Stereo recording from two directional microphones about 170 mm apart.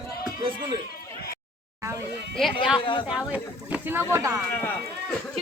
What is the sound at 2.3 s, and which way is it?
Speech, centre (ahead or behind).